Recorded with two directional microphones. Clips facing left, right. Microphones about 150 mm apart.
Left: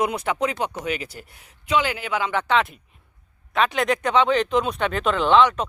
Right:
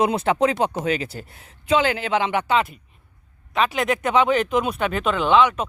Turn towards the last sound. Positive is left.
turn(degrees=-5)  # may be behind; listen again after turning